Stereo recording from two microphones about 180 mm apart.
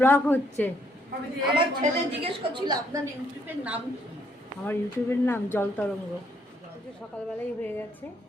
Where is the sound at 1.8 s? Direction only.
30° right (ahead or behind).